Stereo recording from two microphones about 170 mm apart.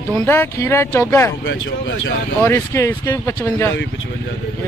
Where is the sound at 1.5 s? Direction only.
90° left.